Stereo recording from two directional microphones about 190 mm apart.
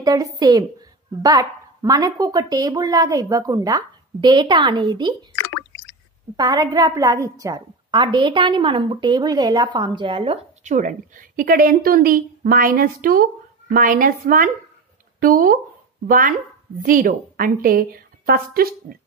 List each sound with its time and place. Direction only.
0.0 s a woman's voice: 20° right (ahead or behind)
6.3 s a woman's voice: 20° right (ahead or behind); by 18.9 s 50° right (ahead or behind)